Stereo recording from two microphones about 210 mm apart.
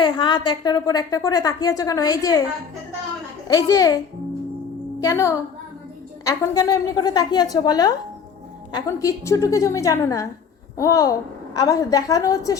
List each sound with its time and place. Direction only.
0.0 s a woman's voice: 20° left (ahead or behind)
3.5 s a woman's voice: 15° left (ahead or behind)